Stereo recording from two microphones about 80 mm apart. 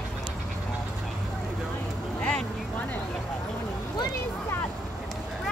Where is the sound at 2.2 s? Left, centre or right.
Centre.